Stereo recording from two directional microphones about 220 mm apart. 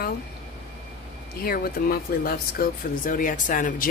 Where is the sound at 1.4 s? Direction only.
45° left (ahead or behind).